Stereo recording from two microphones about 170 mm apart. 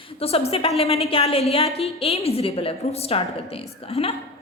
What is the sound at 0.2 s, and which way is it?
A woman's voice, 35° left (ahead or behind).